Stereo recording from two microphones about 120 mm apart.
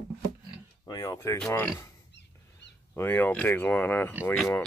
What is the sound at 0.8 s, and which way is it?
Speech, 30° left (ahead or behind).